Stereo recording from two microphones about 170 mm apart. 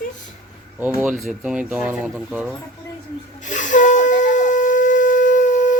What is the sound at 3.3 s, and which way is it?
Wind instrument, 45° left (ahead or behind).